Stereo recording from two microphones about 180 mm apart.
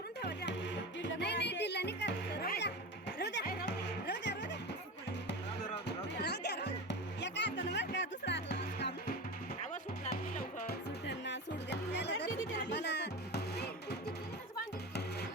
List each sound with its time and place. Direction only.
0.2 s music: 65° left (ahead or behind)
6.1 s music: 65° left (ahead or behind)
10.1 s music: 60° left (ahead or behind)